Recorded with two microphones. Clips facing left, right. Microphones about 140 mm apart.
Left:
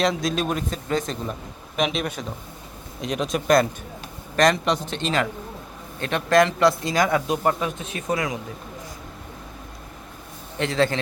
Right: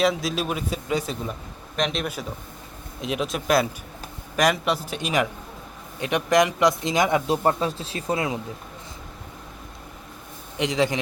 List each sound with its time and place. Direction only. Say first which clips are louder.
0.0 s a man's voice: even; 5° right (ahead or behind)
1.7 s a man's voice: left 2 dB; 5° left (ahead or behind); by 7.3 s 20° right (ahead or behind)
7.4 s speech: right 1 dB; 30° right (ahead or behind)
10.6 s speech: left 1 dB; 15° right (ahead or behind)